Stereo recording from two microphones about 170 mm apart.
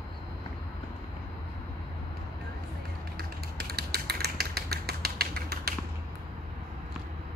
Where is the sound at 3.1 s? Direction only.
65° right (ahead or behind).